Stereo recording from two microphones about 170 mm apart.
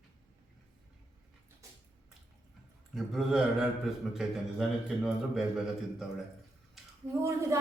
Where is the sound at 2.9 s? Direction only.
Centre (ahead or behind).